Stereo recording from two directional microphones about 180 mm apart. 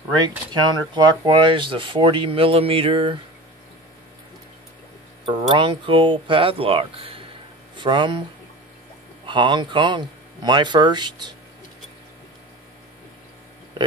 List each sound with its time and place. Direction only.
0.5 s speech: 25° right (ahead or behind)
5.2 s speech: 30° right (ahead or behind)
9.2 s speech: 25° right (ahead or behind)